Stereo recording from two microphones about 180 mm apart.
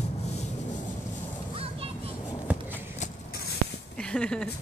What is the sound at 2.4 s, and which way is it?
Walk, 10° right (ahead or behind).